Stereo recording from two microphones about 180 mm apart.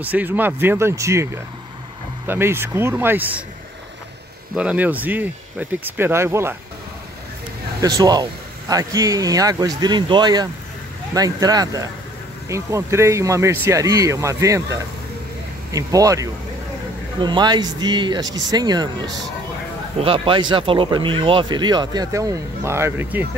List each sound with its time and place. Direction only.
0.0 s speech: 10° right (ahead or behind)
4.6 s speech: 5° right (ahead or behind)
7.8 s speech: 20° right (ahead or behind)